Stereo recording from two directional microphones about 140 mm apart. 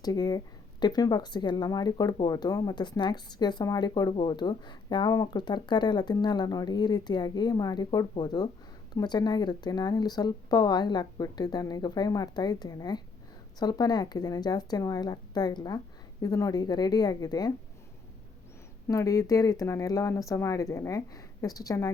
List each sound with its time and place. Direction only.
0.0 s speech: 25° left (ahead or behind)
18.9 s speech: 25° left (ahead or behind)